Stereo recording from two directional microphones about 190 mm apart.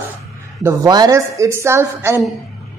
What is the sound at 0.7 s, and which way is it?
Speech, 20° right (ahead or behind).